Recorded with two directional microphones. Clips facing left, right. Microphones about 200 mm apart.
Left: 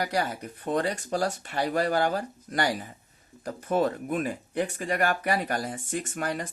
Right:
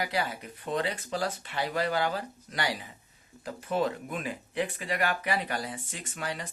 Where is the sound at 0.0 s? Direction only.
45° left (ahead or behind).